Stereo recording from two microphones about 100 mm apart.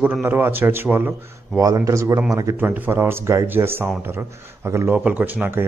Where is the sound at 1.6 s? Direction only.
35° right (ahead or behind).